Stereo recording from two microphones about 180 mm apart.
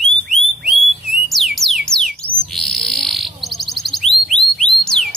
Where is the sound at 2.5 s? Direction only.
Centre (ahead or behind).